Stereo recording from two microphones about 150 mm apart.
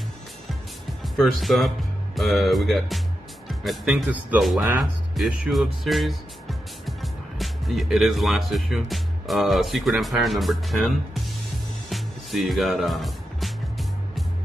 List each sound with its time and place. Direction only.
1.0 s speech: centre (ahead or behind)
11.9 s music: centre (ahead or behind)